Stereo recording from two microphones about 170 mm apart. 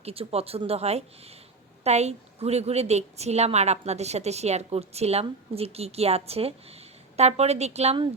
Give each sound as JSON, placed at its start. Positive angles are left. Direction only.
{"t": 0.0, "sound": "a woman's voice", "side_deg": -35}